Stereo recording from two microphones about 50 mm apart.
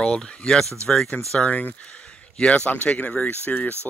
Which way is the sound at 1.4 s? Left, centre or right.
Left.